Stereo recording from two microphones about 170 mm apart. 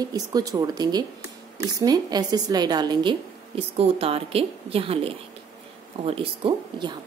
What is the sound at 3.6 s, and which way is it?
A woman's voice, 35° right (ahead or behind).